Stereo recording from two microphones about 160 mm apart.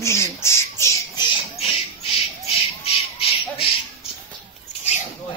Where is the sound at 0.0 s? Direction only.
15° left (ahead or behind).